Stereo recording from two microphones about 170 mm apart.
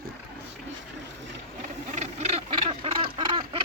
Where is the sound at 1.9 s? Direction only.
40° right (ahead or behind).